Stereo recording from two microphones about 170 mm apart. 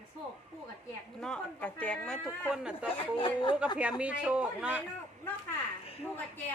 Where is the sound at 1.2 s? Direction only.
5° left (ahead or behind).